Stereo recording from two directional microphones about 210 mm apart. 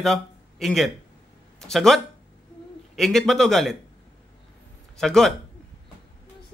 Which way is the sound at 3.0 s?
Centre (ahead or behind).